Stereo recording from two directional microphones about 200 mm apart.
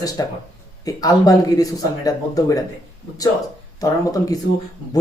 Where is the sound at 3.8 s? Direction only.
15° left (ahead or behind).